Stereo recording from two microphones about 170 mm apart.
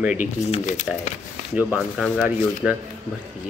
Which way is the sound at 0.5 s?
45° left (ahead or behind).